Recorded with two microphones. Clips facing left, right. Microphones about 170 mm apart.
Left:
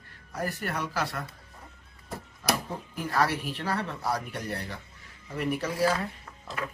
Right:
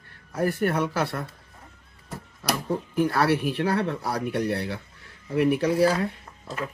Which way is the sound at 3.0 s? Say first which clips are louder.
Right 5 dB; 65° right (ahead or behind).